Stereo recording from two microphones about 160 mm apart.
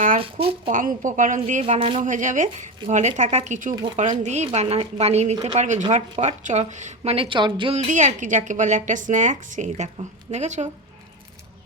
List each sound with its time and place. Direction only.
0.2 s speech: 35° right (ahead or behind)
0.7 s a woman's voice: 55° right (ahead or behind)